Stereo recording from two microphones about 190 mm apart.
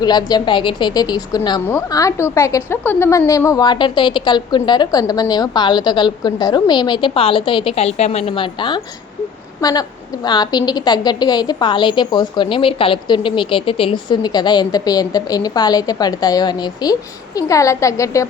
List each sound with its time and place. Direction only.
0.0 s a woman's voice: 20° left (ahead or behind)